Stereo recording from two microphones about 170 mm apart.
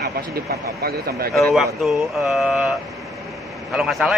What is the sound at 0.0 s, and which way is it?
Speech, 65° right (ahead or behind).